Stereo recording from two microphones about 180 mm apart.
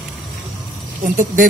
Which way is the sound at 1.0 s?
45° right (ahead or behind).